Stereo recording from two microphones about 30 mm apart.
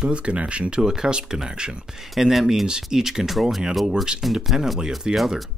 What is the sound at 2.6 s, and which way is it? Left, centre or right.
Speech, right.